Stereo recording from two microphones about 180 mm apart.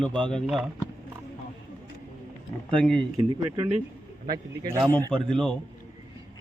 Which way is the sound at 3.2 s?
30° right (ahead or behind).